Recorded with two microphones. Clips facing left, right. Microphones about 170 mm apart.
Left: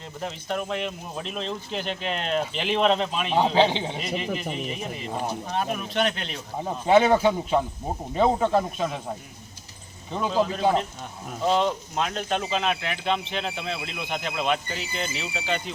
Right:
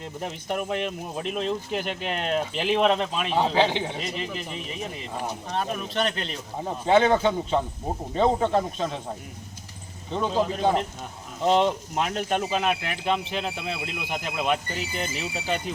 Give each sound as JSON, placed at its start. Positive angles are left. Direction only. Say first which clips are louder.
{"t": 0.2, "sound": "speech", "louder": "even", "side_deg": -10}
{"t": 3.5, "sound": "a man's voice", "louder": "left 2 dB", "side_deg": 20}
{"t": 3.9, "sound": "a man's voice", "louder": "left 2 dB", "side_deg": 5}
{"t": 10.1, "sound": "speech", "louder": "even", "side_deg": 5}
{"t": 11.4, "sound": "speech", "louder": "right 2 dB", "side_deg": -20}